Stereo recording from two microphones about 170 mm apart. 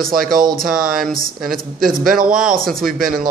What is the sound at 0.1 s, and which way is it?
Speech, 55° right (ahead or behind).